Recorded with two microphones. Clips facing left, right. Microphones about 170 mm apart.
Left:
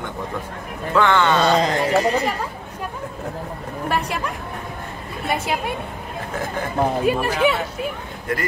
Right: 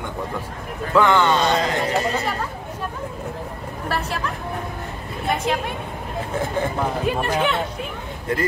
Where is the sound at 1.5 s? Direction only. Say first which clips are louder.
Left 3 dB; 40° left (ahead or behind).